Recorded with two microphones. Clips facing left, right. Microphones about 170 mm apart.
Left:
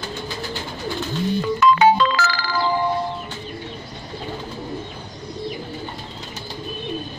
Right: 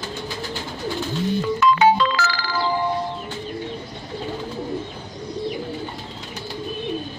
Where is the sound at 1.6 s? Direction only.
50° left (ahead or behind).